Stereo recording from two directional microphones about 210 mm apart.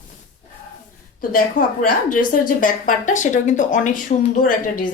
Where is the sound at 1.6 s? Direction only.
40° left (ahead or behind).